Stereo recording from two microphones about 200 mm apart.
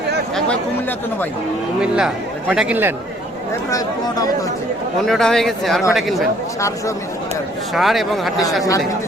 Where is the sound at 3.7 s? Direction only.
20° left (ahead or behind).